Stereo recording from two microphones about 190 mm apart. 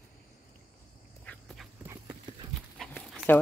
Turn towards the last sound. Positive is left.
turn(degrees=5)  # may be behind; listen again after turning